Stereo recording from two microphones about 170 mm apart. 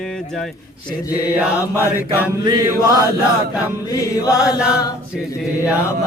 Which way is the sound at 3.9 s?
20° left (ahead or behind).